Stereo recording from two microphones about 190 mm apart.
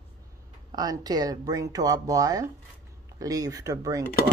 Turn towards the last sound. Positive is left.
turn(degrees=-20)  # may be behind; listen again after turning